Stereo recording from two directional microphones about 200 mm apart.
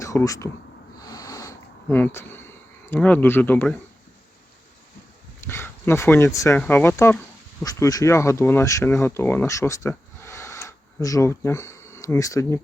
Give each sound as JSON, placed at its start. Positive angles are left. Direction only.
{"t": 0.0, "sound": "speech", "side_deg": 15}
{"t": 1.0, "sound": "a sound", "side_deg": 15}
{"t": 2.9, "sound": "speech", "side_deg": 10}
{"t": 5.4, "sound": "speech", "side_deg": 10}